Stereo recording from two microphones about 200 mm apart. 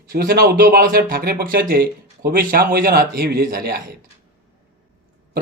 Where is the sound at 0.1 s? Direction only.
50° right (ahead or behind).